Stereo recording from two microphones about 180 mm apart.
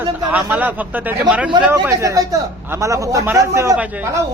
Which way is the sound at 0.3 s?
10° right (ahead or behind).